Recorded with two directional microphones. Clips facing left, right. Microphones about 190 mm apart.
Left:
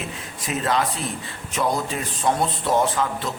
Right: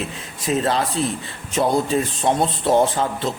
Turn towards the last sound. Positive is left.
turn(degrees=-30)  # may be behind; listen again after turning